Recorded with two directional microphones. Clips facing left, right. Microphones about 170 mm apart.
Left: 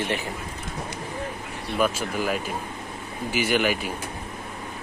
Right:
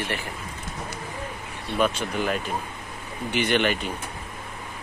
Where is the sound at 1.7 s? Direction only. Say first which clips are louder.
Even; 5° left (ahead or behind).